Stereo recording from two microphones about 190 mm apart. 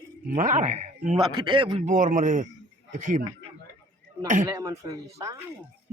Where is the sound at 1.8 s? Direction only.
40° right (ahead or behind).